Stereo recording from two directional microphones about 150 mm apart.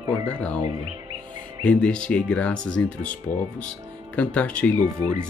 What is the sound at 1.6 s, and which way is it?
Speech, 5° left (ahead or behind).